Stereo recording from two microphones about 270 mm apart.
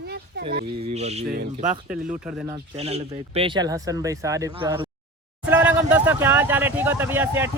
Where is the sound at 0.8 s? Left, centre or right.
Right.